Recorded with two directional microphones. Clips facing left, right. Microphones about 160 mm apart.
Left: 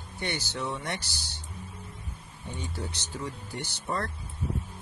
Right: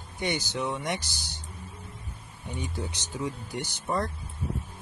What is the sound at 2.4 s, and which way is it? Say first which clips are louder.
Speech: right 2 dB; 15° right (ahead or behind).